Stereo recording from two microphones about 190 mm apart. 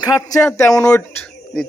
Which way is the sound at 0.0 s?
20° left (ahead or behind).